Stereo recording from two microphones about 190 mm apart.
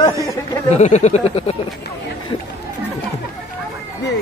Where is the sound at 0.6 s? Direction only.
35° left (ahead or behind).